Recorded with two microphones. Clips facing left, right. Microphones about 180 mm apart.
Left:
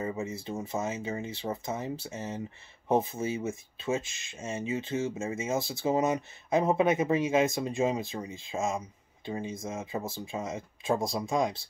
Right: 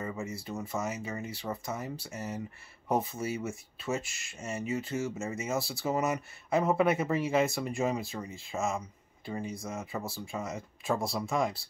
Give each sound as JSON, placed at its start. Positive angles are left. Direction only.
{"t": 0.0, "sound": "speech", "side_deg": 20}